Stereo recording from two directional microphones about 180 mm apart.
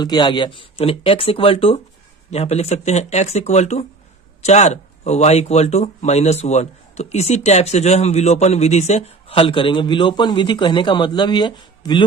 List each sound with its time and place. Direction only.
0.0 s speech: 25° left (ahead or behind)